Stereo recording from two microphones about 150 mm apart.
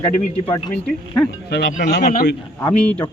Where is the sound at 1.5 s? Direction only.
90° left.